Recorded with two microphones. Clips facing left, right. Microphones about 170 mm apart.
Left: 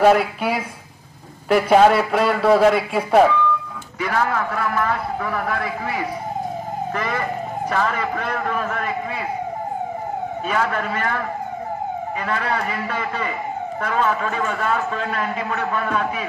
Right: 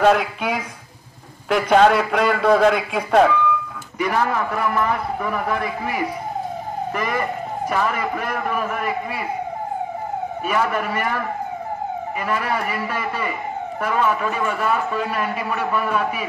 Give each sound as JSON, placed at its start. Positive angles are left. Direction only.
{"t": 0.0, "sound": "a man's voice", "side_deg": 5}
{"t": 4.0, "sound": "a man's voice", "side_deg": -15}
{"t": 10.4, "sound": "a man's voice", "side_deg": -10}
{"t": 12.3, "sound": "a man's voice", "side_deg": -10}